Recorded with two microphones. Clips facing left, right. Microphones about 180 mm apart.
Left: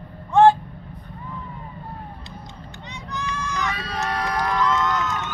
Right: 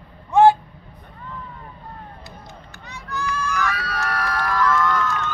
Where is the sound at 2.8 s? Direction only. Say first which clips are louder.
Right 3 dB; 20° left (ahead or behind).